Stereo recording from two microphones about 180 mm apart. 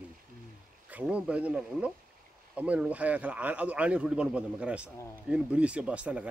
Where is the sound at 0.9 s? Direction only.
10° right (ahead or behind).